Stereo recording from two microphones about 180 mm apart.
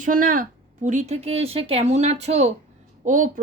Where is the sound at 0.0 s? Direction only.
50° right (ahead or behind).